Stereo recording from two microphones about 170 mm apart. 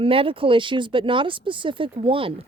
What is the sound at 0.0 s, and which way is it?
Speech, 30° right (ahead or behind).